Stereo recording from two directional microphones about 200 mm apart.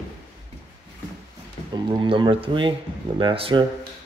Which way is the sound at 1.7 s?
25° right (ahead or behind).